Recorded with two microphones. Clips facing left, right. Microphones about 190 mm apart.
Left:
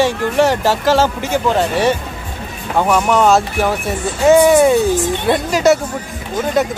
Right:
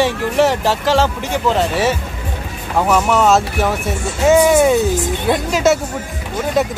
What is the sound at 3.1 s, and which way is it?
Speech, centre (ahead or behind).